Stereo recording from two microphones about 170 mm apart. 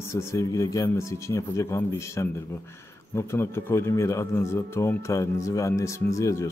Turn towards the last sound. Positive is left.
turn(degrees=20)  # may be behind; listen again after turning